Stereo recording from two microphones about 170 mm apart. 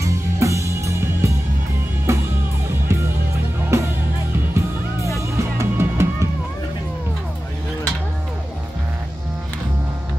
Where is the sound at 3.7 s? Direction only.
15° right (ahead or behind).